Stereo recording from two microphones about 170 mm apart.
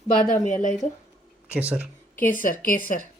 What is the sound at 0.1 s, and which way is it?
Speech, 50° left (ahead or behind).